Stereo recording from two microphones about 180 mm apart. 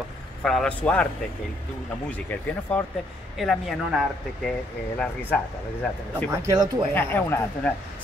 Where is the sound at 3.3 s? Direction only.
Centre (ahead or behind).